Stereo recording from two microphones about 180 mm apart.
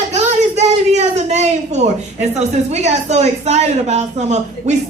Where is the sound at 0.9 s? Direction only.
40° right (ahead or behind).